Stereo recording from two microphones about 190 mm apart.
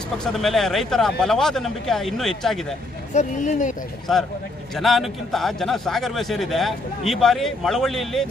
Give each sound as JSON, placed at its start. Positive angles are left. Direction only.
{"t": 0.2, "sound": "speech", "side_deg": 0}
{"t": 3.1, "sound": "speech", "side_deg": 40}
{"t": 4.1, "sound": "speech", "side_deg": 0}